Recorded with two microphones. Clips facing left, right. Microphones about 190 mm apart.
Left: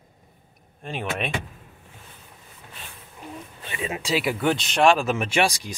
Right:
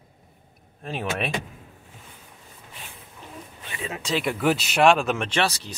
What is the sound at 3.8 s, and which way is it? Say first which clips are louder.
Speech: left 2 dB; 10° left (ahead or behind).